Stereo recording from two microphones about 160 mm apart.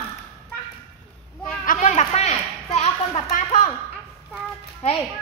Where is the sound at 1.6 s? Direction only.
55° left (ahead or behind); by 3.2 s 40° left (ahead or behind).